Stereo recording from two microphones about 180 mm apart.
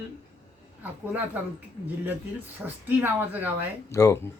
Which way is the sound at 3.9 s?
15° left (ahead or behind).